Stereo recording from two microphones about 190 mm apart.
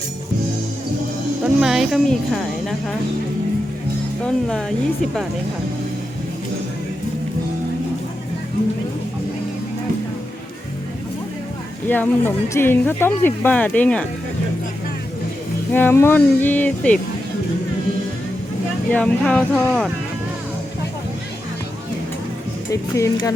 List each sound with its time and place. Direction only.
1.6 s speech: centre (ahead or behind)
4.2 s speech: 5° left (ahead or behind)
11.9 s speech: 10° left (ahead or behind)
15.7 s speech: 10° left (ahead or behind)
18.9 s speech: 5° left (ahead or behind)
22.7 s speech: 15° left (ahead or behind)